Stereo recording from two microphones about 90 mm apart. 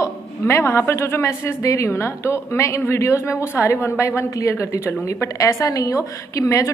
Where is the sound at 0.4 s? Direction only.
30° left (ahead or behind).